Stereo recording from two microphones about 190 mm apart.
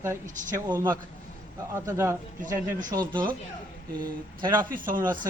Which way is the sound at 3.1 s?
25° right (ahead or behind).